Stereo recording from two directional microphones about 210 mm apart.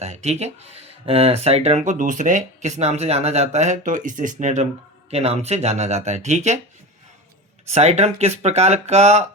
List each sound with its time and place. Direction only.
0.0 s speech: 30° right (ahead or behind)
7.7 s speech: 30° right (ahead or behind)